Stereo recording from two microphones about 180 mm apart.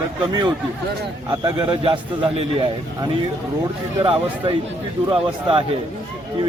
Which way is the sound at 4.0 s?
30° right (ahead or behind).